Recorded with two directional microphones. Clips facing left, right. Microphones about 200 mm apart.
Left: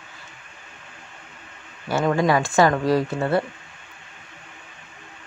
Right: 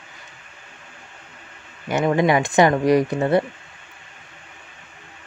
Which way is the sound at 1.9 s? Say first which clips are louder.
Right 2 dB; 20° right (ahead or behind).